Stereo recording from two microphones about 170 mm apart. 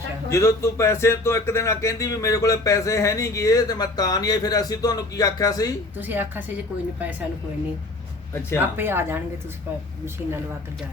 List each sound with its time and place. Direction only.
0.3 s speech: 15° left (ahead or behind)
6.0 s speech: 10° right (ahead or behind)
8.4 s speech: 15° left (ahead or behind)
8.7 s speech: 15° right (ahead or behind)